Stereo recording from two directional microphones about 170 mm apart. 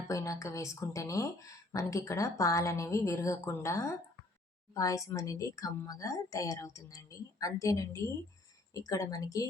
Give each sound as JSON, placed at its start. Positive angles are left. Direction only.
{"t": 0.1, "sound": "speech", "side_deg": 20}